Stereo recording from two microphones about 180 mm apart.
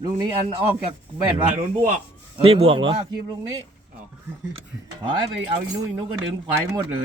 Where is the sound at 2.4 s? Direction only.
30° right (ahead or behind).